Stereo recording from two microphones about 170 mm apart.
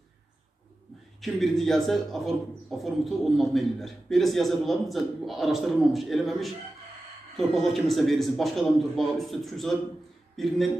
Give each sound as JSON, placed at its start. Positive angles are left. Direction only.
{"t": 1.2, "sound": "speech", "side_deg": 0}